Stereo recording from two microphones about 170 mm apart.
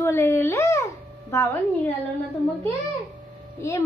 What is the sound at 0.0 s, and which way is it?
A woman's voice, 15° left (ahead or behind).